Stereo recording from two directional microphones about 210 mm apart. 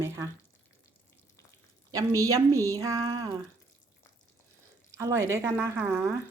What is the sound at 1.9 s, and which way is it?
A woman's voice, 15° right (ahead or behind).